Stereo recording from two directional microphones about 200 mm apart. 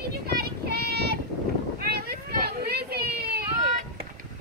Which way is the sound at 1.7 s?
50° right (ahead or behind).